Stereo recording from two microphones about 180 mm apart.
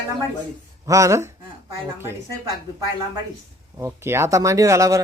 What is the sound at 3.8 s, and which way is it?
A woman's voice, 15° right (ahead or behind).